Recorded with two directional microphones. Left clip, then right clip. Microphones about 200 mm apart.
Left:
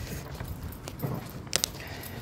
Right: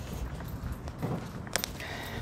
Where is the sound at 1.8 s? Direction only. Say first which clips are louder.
Right 3 dB; 10° right (ahead or behind).